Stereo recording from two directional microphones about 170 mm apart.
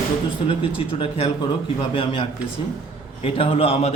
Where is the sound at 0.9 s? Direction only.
35° left (ahead or behind).